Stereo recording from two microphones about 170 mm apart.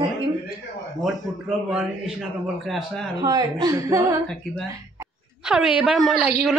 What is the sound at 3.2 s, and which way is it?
Speech, 25° right (ahead or behind).